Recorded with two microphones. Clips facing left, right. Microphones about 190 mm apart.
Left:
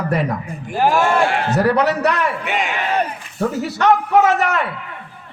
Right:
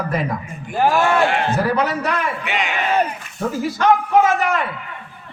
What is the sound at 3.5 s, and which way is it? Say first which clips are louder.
A man's voice: even; 70° left (ahead or behind).